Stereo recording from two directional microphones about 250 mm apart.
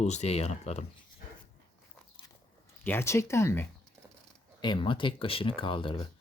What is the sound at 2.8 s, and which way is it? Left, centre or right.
Speech, centre.